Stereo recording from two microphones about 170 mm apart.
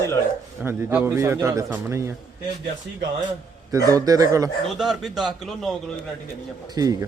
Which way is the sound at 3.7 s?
20° right (ahead or behind).